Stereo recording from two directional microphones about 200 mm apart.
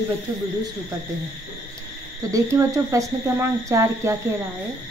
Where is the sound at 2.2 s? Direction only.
15° right (ahead or behind).